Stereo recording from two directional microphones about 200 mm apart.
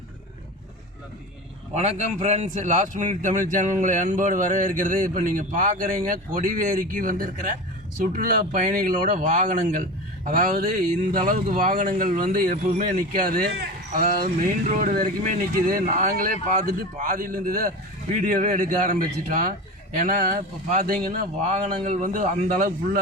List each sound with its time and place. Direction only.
1.7 s a man's voice: 35° right (ahead or behind)